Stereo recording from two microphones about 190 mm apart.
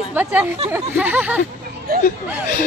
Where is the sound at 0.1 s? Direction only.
10° right (ahead or behind).